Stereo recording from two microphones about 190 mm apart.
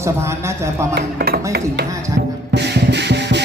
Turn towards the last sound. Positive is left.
turn(degrees=-65)  # may be behind; listen again after turning